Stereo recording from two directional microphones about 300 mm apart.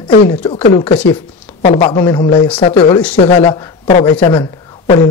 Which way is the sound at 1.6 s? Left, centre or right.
Centre.